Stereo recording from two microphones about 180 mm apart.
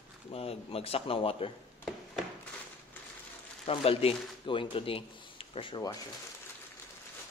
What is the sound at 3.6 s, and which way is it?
Speech, 30° left (ahead or behind).